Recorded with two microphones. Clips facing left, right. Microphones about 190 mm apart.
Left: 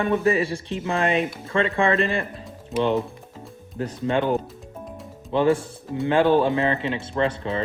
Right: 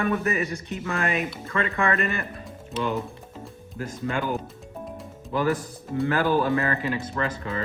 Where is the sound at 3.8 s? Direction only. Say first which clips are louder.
Left 5 dB; 30° left (ahead or behind).